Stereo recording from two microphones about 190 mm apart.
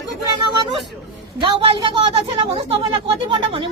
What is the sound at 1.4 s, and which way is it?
A woman's voice, 25° right (ahead or behind).